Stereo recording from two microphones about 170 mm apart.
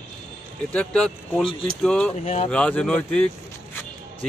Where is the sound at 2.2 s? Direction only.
40° left (ahead or behind).